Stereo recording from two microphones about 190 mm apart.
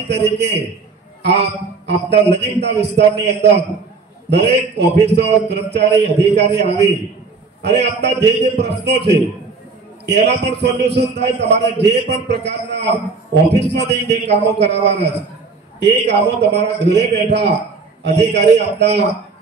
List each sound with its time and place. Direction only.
0.1 s a man's voice: 60° right (ahead or behind)
4.5 s a man's voice: 65° right (ahead or behind)